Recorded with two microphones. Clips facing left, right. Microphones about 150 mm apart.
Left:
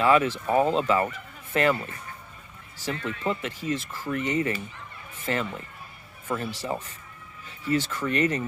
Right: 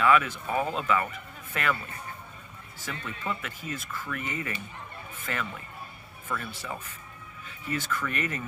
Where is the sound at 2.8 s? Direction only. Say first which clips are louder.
Left 6 dB; 35° left (ahead or behind).